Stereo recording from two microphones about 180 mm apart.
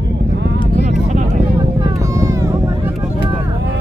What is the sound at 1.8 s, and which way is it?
Vehicle, 20° right (ahead or behind).